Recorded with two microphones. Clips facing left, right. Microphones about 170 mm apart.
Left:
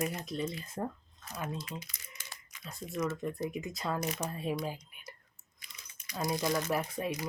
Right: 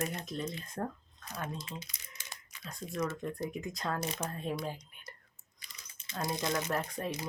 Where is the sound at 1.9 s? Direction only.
20° right (ahead or behind).